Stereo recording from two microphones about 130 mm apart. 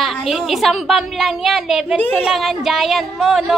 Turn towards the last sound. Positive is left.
turn(degrees=0)  # may be behind; listen again after turning